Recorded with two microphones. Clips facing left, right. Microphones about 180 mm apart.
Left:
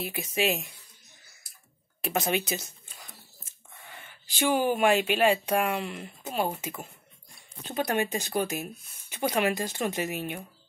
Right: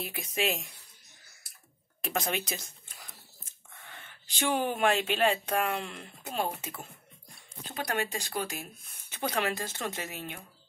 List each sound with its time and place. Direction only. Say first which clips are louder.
0.0 s speech: left 4 dB; 5° left (ahead or behind)
2.0 s speech: left 4 dB; 5° left (ahead or behind)